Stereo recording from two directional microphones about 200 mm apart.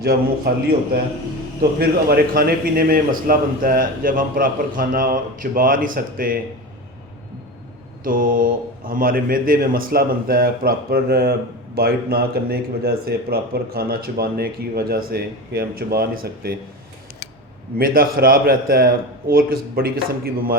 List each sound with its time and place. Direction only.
0.5 s speech: 50° right (ahead or behind)
1.8 s speech: 50° right (ahead or behind)
8.0 s speech: 45° right (ahead or behind)
17.7 s speech: 45° right (ahead or behind)